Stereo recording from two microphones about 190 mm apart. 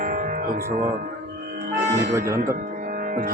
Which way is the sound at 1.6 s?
55° right (ahead or behind).